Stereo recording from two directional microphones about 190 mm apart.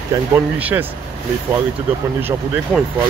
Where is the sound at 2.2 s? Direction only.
10° right (ahead or behind).